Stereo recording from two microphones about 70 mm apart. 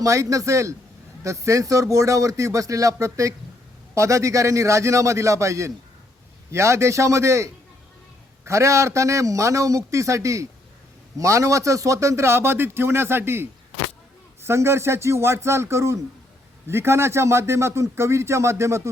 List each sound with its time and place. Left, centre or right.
0.0 s a man's voice: right